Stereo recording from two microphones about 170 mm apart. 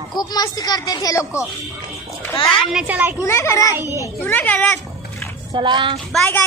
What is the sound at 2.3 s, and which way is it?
Speech, 30° left (ahead or behind).